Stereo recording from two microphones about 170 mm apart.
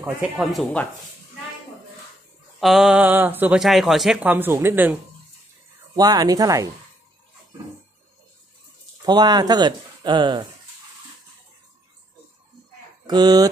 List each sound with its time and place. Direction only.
0.0 s speech: 5° right (ahead or behind)
2.6 s speech: centre (ahead or behind)
5.9 s speech: 20° right (ahead or behind)
9.0 s speech: 25° right (ahead or behind)
13.0 s speech: 25° right (ahead or behind)